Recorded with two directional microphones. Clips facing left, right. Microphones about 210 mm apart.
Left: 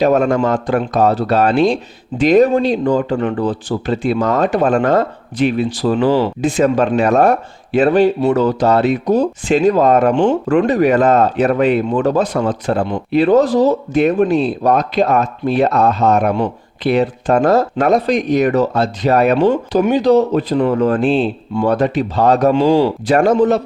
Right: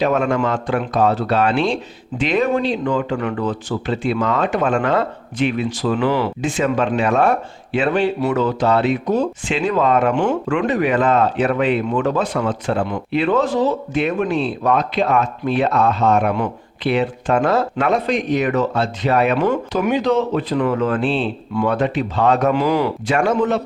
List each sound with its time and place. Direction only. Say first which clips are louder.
0.0 s speech: left 4 dB; 40° left (ahead or behind)
19.4 s speech: left 5 dB; 25° left (ahead or behind); by 21.2 s 45° left (ahead or behind)
21.5 s speech: left 3 dB; 35° left (ahead or behind)